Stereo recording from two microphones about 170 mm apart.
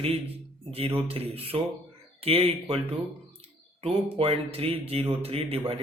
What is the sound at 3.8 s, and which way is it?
Speech, 35° right (ahead or behind).